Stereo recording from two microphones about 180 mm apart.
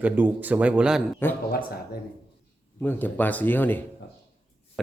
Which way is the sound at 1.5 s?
55° left (ahead or behind).